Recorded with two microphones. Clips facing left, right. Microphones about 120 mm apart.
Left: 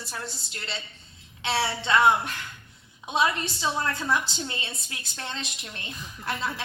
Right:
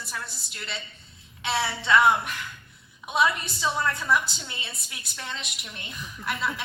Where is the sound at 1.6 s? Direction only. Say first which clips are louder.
Right 1 dB; 25° left (ahead or behind).